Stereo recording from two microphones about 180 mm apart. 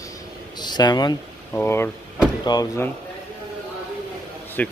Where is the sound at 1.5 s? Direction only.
10° left (ahead or behind).